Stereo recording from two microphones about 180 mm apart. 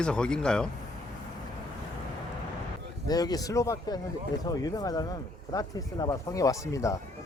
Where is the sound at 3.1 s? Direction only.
20° left (ahead or behind).